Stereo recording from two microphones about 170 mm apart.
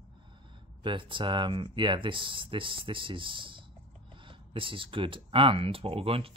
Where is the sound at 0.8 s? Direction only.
30° right (ahead or behind).